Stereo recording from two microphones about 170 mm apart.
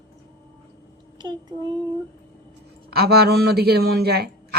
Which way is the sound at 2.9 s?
65° right (ahead or behind).